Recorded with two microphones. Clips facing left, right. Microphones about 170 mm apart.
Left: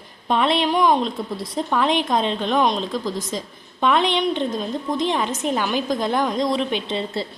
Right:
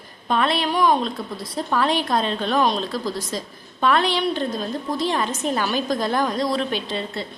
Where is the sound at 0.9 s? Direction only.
5° right (ahead or behind).